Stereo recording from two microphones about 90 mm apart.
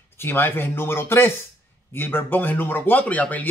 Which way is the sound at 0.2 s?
25° left (ahead or behind).